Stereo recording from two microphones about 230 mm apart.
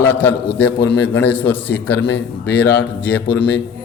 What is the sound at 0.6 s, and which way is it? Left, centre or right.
A man's voice, left.